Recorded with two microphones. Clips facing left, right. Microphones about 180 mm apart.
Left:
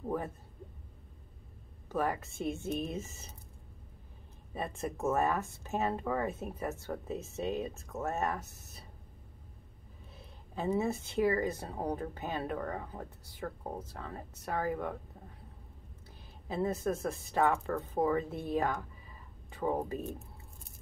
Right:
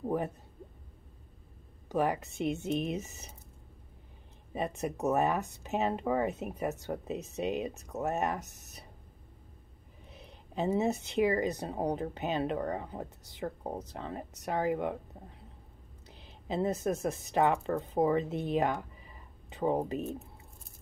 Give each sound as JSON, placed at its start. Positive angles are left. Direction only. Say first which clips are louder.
{"t": 1.9, "sound": "speech", "louder": "right 3 dB", "side_deg": -20}
{"t": 4.6, "sound": "speech", "louder": "right 3 dB", "side_deg": -20}
{"t": 10.1, "sound": "speech", "louder": "right 5 dB", "side_deg": -20}
{"t": 16.1, "sound": "speech", "louder": "right 4 dB", "side_deg": -20}